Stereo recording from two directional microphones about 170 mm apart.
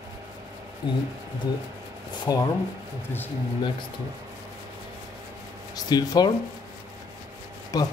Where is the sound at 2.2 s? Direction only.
20° left (ahead or behind).